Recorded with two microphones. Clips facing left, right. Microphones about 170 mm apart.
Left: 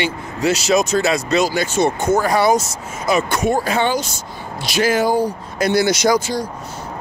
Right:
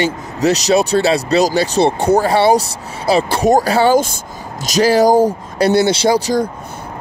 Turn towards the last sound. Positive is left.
turn(degrees=-30)  # may be behind; listen again after turning